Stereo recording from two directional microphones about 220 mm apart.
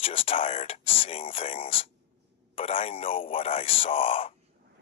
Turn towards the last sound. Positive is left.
turn(degrees=25)  # may be behind; listen again after turning